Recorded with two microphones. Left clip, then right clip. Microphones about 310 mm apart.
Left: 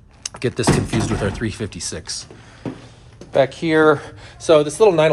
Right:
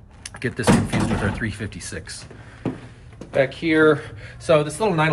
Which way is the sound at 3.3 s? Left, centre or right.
Centre.